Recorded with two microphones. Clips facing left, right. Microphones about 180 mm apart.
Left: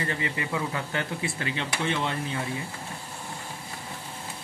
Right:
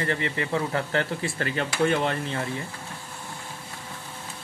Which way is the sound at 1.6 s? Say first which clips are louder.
Right 6 dB; 55° right (ahead or behind).